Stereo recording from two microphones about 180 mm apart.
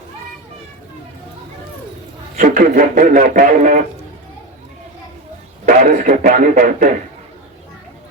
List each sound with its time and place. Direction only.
2.4 s speech: 50° right (ahead or behind)
5.6 s speech: 50° right (ahead or behind)